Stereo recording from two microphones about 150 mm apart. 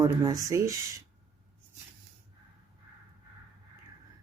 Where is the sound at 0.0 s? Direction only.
25° right (ahead or behind).